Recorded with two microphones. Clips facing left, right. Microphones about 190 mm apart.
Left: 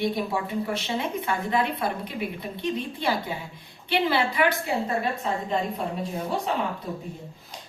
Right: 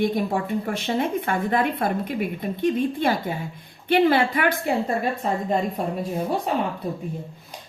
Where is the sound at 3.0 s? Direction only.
50° right (ahead or behind).